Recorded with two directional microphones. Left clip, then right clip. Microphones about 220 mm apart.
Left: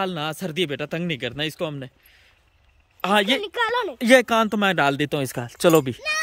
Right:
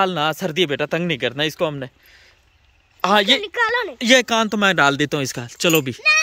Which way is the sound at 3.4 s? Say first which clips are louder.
Right 3 dB; 40° left (ahead or behind).